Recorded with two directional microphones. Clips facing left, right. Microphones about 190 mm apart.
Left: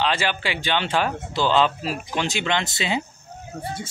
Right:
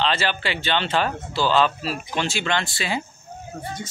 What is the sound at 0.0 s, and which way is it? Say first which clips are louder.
Speech: even; 15° left (ahead or behind).